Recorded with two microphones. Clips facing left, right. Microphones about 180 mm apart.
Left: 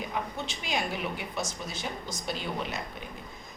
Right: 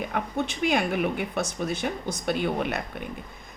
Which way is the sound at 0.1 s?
55° right (ahead or behind).